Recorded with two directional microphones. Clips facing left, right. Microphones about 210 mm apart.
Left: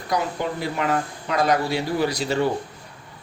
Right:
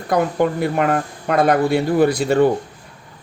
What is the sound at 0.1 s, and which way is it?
Speech, 55° right (ahead or behind).